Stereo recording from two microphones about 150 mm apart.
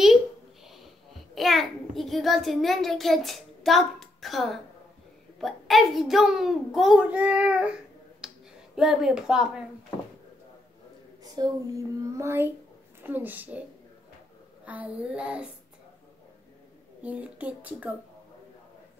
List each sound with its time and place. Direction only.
1.3 s a child's voice: centre (ahead or behind)
8.2 s finger snapping: 5° right (ahead or behind)
8.7 s a child's voice: centre (ahead or behind)
11.3 s a child's voice: 25° right (ahead or behind); by 15.4 s 5° right (ahead or behind)
17.0 s speech: 10° right (ahead or behind)